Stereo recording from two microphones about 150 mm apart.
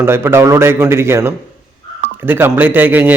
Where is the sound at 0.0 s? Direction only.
15° right (ahead or behind).